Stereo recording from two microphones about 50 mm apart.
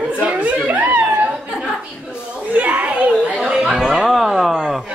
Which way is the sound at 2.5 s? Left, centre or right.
Right.